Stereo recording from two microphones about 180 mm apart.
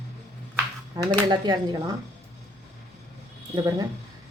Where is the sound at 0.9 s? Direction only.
25° right (ahead or behind).